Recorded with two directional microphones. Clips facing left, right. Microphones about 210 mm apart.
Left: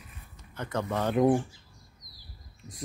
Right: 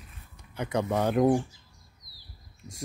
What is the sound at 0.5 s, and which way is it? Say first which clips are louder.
Speech: right 3 dB; 15° right (ahead or behind).